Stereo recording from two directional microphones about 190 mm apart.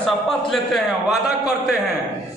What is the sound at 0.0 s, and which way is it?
A man's voice, centre (ahead or behind).